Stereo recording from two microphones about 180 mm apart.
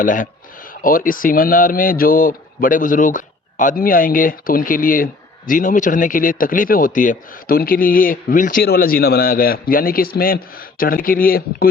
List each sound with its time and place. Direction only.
0.0 s a man's voice: 50° left (ahead or behind)